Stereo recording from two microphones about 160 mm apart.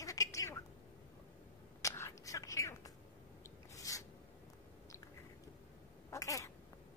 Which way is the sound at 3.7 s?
20° left (ahead or behind).